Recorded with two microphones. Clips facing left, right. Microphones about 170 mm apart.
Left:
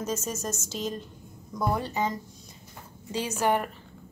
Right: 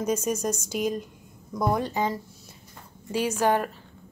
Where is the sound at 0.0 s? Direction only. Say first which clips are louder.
Right 6 dB; 15° right (ahead or behind).